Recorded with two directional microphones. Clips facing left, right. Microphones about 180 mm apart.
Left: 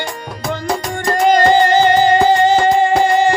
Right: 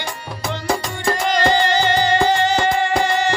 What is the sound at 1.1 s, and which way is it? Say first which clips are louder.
Music: left 8 dB; 50° left (ahead or behind).